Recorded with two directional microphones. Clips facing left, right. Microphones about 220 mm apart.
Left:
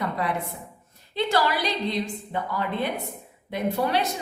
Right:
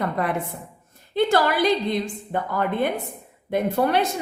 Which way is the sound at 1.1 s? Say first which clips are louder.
Right 4 dB; 50° right (ahead or behind).